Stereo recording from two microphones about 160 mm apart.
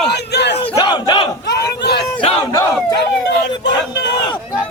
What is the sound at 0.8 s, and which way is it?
Battle cry, 30° left (ahead or behind).